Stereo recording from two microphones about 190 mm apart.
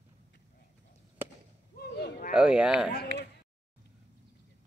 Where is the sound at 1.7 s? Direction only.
60° left (ahead or behind).